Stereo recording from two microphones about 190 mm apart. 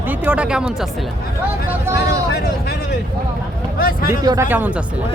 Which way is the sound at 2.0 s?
60° left (ahead or behind).